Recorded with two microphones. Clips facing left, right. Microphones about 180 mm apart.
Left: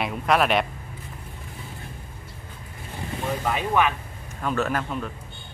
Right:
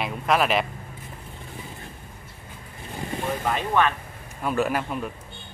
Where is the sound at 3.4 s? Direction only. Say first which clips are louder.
Even; 10° left (ahead or behind).